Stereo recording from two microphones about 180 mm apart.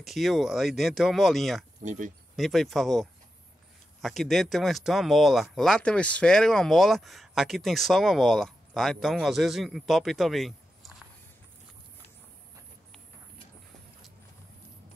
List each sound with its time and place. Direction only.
0.0 s speech: centre (ahead or behind)
1.8 s speech: 45° right (ahead or behind)
2.3 s speech: centre (ahead or behind)